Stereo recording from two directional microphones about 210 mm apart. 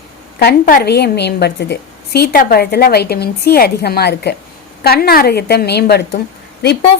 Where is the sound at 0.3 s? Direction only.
50° left (ahead or behind).